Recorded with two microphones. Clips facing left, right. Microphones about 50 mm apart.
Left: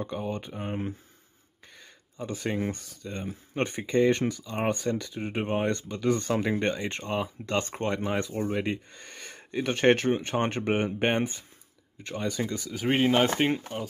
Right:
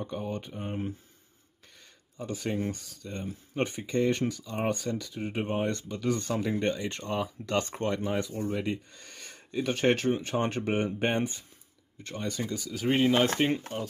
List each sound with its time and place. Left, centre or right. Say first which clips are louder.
0.2 s speech: left 2 dB; left
2.1 s speech: left 1 dB; left
8.0 s speech: left 2 dB; left
12.2 s speech: left 3 dB; left
12.7 s speech: left 1 dB; left